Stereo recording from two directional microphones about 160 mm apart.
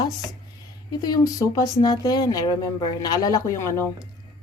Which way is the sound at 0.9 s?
25° left (ahead or behind).